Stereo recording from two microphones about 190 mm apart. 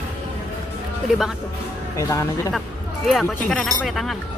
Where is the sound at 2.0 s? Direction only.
15° left (ahead or behind).